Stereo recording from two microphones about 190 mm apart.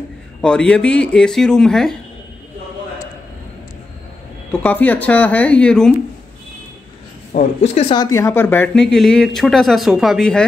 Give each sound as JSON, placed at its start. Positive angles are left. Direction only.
{"t": 0.4, "sound": "speech", "side_deg": 5}
{"t": 4.5, "sound": "speech", "side_deg": 10}
{"t": 7.3, "sound": "a woman's voice", "side_deg": 35}
{"t": 8.0, "sound": "speech", "side_deg": 15}